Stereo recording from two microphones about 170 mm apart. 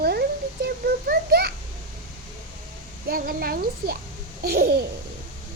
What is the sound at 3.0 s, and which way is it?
Speech, 60° right (ahead or behind).